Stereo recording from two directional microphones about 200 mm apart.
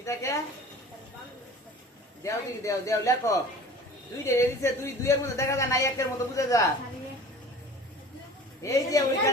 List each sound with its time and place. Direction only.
0.0 s a woman's voice: 15° left (ahead or behind)
2.2 s a woman's voice: 15° left (ahead or behind)
8.6 s a woman's voice: 15° left (ahead or behind)